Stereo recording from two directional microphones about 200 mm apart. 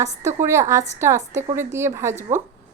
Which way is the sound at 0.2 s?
15° right (ahead or behind).